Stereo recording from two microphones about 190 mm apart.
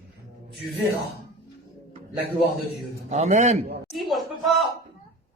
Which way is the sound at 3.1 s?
35° right (ahead or behind).